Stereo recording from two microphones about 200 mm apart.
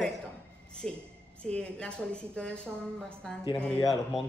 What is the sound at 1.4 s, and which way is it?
A woman's voice, 5° left (ahead or behind).